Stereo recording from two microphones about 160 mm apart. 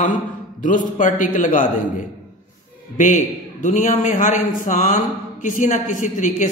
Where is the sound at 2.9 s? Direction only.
50° left (ahead or behind).